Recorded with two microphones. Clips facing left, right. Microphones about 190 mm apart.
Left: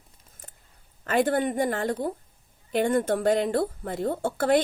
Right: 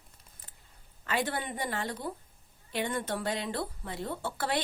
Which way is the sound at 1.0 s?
50° left (ahead or behind).